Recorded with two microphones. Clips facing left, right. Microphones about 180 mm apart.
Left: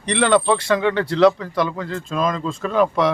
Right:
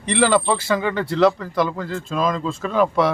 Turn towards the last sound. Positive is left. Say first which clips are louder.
# even
turn(degrees=0)  # may be behind; listen again after turning